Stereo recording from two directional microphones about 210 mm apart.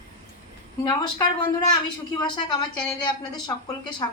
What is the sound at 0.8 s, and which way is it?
Speech, 20° left (ahead or behind).